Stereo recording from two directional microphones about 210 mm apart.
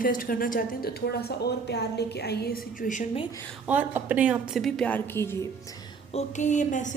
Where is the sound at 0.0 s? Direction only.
40° left (ahead or behind).